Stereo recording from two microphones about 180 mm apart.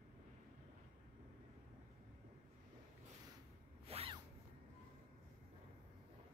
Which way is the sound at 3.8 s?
35° right (ahead or behind).